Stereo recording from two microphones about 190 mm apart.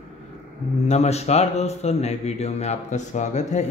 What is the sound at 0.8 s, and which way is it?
Speech, 35° left (ahead or behind).